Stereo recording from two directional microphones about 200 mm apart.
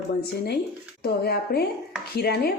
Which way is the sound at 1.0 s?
55° left (ahead or behind).